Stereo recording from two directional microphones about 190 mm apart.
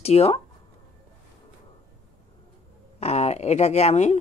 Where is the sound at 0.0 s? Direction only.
30° left (ahead or behind).